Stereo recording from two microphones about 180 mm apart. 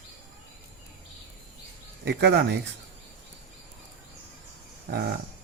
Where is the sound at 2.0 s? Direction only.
70° right (ahead or behind).